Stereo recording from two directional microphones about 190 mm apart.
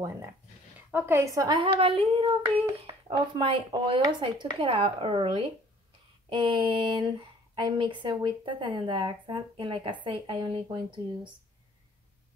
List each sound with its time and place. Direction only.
0.7 s speech: 10° right (ahead or behind)